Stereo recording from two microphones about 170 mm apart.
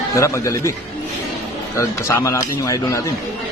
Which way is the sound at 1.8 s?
15° left (ahead or behind).